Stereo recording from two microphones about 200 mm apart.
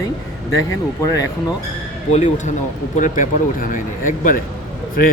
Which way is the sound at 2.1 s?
35° left (ahead or behind).